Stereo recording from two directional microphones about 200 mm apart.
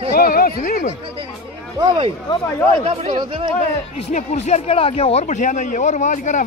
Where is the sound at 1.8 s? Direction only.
25° right (ahead or behind).